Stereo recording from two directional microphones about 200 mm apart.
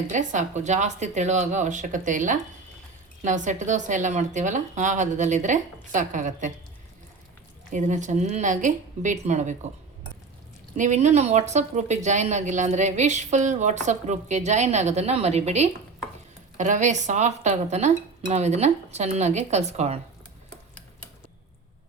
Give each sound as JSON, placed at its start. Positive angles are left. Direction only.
{"t": 0.1, "sound": "a woman's voice", "side_deg": -40}
{"t": 7.7, "sound": "a woman's voice", "side_deg": -40}
{"t": 10.8, "sound": "a woman's voice", "side_deg": -35}